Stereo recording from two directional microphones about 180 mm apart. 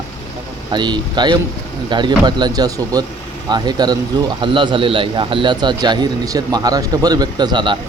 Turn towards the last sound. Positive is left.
turn(degrees=-25)  # may be behind; listen again after turning